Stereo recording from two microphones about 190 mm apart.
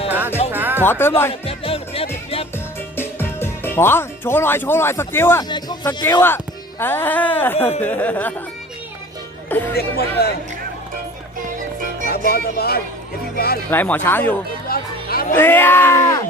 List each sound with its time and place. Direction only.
0.5 s music: 10° right (ahead or behind)
0.9 s speech: 10° left (ahead or behind)
1.3 s music: 30° left (ahead or behind)
2.9 s speech: 10° left (ahead or behind)
9.5 s speech: 10° left (ahead or behind)
9.7 s speech: 55° left (ahead or behind)
11.5 s music: 45° right (ahead or behind)
12.3 s speech: 55° left (ahead or behind)
13.7 s speech: 10° left (ahead or behind)
14.7 s music: 50° left (ahead or behind)
15.4 s speech: 10° left (ahead or behind)